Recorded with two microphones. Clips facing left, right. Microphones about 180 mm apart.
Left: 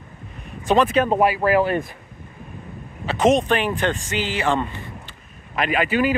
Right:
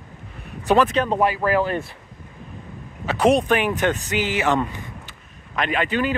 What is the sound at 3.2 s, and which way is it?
Speech, 10° right (ahead or behind).